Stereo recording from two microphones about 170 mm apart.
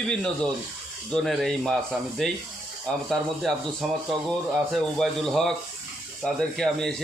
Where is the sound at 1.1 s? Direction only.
Centre (ahead or behind).